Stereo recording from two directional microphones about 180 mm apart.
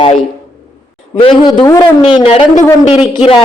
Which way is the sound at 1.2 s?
25° left (ahead or behind).